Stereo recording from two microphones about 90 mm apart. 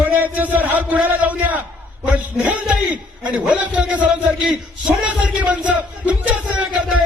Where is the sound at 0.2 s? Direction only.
20° right (ahead or behind).